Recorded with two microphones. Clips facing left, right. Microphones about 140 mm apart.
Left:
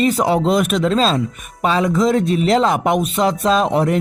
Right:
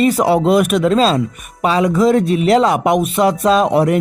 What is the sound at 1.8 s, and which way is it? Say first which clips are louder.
Speech: right 4 dB; 10° right (ahead or behind).